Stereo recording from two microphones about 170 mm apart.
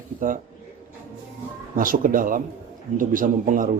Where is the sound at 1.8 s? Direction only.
55° right (ahead or behind).